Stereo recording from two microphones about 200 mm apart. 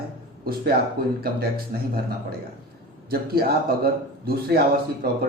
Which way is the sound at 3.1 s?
50° right (ahead or behind).